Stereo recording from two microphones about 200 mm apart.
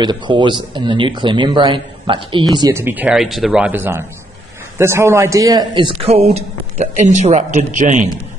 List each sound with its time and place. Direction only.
0.0 s a man's voice: 20° right (ahead or behind); by 8.1 s 40° right (ahead or behind)